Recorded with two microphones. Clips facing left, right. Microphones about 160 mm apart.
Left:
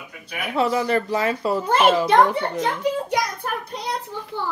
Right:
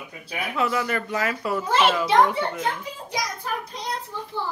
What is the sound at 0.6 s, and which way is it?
Speech, 30° left (ahead or behind).